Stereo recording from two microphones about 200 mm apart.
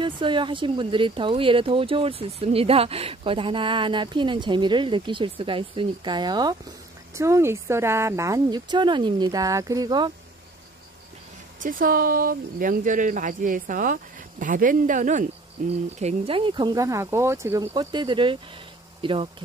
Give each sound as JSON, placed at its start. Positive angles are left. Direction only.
{"t": 0.0, "sound": "speech", "side_deg": -25}
{"t": 11.6, "sound": "speech", "side_deg": -45}